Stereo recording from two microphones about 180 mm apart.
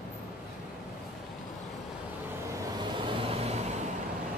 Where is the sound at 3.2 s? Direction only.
35° right (ahead or behind).